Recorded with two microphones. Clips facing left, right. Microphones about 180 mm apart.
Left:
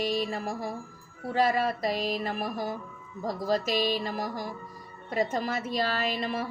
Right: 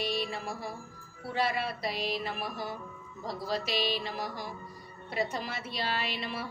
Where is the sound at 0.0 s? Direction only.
45° left (ahead or behind).